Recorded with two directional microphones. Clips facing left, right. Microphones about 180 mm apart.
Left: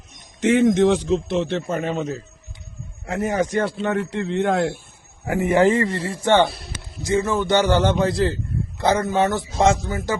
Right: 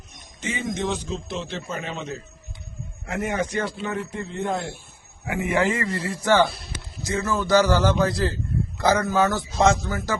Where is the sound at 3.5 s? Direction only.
60° left (ahead or behind); by 4.7 s 90° left.